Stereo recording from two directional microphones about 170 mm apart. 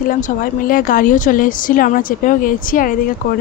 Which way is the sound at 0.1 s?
55° left (ahead or behind).